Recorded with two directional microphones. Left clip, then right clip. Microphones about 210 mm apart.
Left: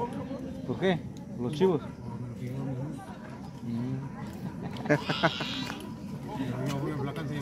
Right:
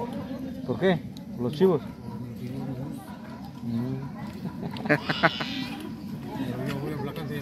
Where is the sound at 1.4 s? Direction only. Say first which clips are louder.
Right 4 dB; 40° right (ahead or behind).